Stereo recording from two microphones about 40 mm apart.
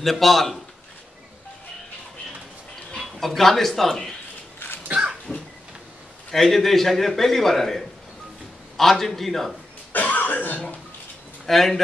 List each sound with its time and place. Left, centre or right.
0.0 s a man's voice: centre
3.2 s a man's voice: centre
4.6 s a sound: left
5.3 s crow: right
6.3 s a man's voice: centre
9.9 s cough: left
11.4 s a man's voice: centre